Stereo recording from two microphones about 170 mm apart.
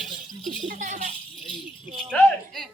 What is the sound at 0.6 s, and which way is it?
Speech, 45° right (ahead or behind).